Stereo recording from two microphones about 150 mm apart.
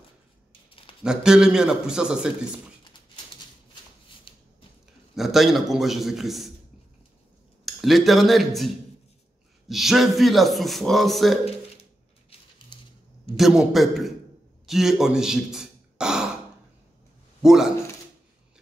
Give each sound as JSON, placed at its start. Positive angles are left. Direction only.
{"t": 0.5, "sound": "a sound", "side_deg": 35}
{"t": 1.0, "sound": "a man's voice", "side_deg": -5}
{"t": 4.3, "sound": "a sound", "side_deg": 35}
{"t": 5.1, "sound": "a man's voice", "side_deg": 0}
{"t": 7.6, "sound": "a man's voice", "side_deg": 0}
{"t": 12.7, "sound": "cap gun", "side_deg": 35}
{"t": 13.4, "sound": "a man's voice", "side_deg": -5}
{"t": 17.4, "sound": "speech", "side_deg": 0}